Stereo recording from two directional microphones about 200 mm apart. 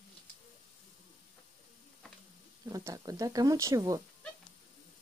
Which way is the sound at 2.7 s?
15° right (ahead or behind).